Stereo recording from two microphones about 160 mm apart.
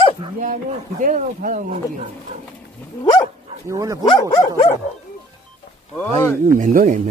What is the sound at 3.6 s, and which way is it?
Speech, 20° right (ahead or behind).